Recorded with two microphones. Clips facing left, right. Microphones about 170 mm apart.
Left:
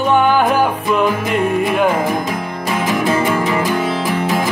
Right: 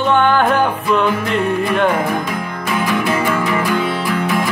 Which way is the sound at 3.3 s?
20° left (ahead or behind).